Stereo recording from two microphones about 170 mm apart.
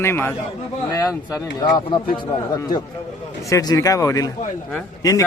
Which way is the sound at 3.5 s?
20° left (ahead or behind).